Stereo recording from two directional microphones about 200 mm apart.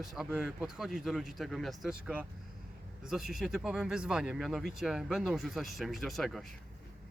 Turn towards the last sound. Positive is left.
turn(degrees=0)  # may be behind; listen again after turning